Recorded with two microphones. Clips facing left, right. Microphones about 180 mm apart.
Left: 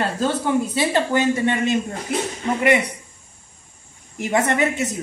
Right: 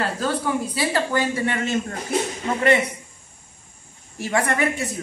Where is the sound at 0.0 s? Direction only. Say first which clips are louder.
Left 2 dB; 25° left (ahead or behind).